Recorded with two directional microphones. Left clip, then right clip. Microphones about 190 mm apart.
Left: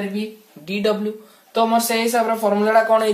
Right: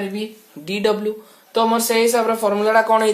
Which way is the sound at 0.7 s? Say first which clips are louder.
Right 2 dB; 45° right (ahead or behind).